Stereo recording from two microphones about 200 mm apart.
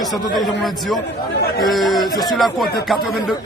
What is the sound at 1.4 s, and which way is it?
Speech, 50° left (ahead or behind).